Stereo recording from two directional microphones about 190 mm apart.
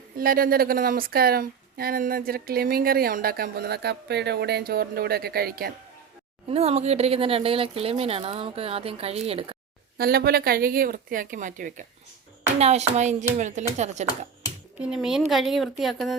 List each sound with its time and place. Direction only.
0.2 s speech: 50° right (ahead or behind)
6.5 s speech: 35° right (ahead or behind)
10.0 s speech: 55° right (ahead or behind); by 14.1 s 35° right (ahead or behind)
14.8 s speech: 5° right (ahead or behind)